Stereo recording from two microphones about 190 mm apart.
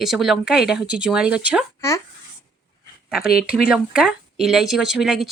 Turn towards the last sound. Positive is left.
turn(degrees=0)  # may be behind; listen again after turning